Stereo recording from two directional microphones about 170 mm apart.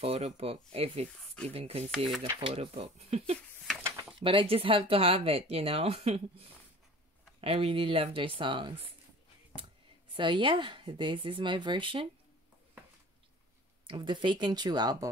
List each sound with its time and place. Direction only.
0.0 s speech: 35° right (ahead or behind)
10.1 s speech: 30° right (ahead or behind)
13.8 s speech: 25° right (ahead or behind)